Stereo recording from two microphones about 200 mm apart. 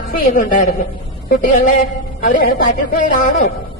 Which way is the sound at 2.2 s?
45° left (ahead or behind).